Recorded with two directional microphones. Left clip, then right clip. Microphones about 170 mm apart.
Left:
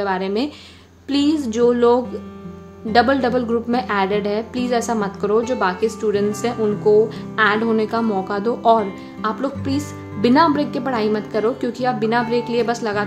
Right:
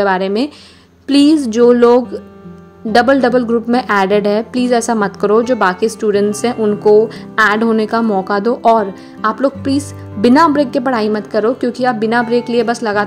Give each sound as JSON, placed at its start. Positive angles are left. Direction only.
{"t": 0.0, "sound": "a woman's voice", "side_deg": -40}